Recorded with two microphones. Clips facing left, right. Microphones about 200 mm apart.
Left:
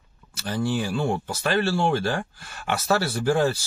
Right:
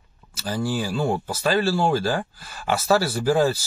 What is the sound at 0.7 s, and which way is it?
Speech, 30° right (ahead or behind).